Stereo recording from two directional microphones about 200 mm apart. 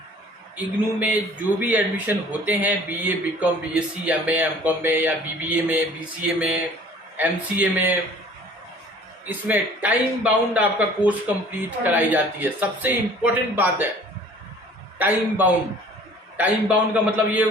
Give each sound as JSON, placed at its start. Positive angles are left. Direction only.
{"t": 0.5, "sound": "a man's voice", "side_deg": -5}
{"t": 9.2, "sound": "a man's voice", "side_deg": -10}
{"t": 14.9, "sound": "a man's voice", "side_deg": -10}